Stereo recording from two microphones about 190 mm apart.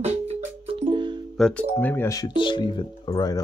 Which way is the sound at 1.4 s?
10° left (ahead or behind).